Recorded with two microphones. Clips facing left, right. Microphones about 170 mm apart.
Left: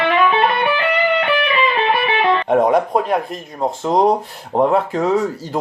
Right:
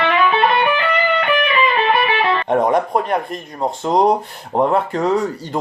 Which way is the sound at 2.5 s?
Centre (ahead or behind).